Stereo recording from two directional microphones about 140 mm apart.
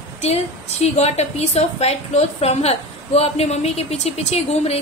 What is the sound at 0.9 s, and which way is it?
A woman's voice, 50° left (ahead or behind).